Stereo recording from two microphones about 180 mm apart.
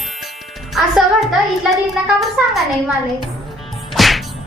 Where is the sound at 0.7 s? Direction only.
Centre (ahead or behind).